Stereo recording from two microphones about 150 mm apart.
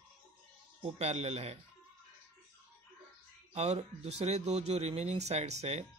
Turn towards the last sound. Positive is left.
turn(degrees=-45)  # may be behind; listen again after turning